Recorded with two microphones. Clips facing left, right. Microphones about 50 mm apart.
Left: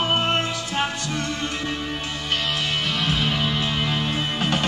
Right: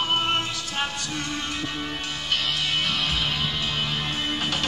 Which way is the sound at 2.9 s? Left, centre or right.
Centre.